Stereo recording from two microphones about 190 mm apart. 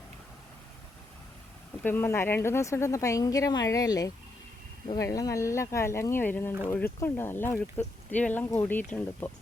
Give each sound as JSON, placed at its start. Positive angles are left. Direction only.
{"t": 1.8, "sound": "speech", "side_deg": 10}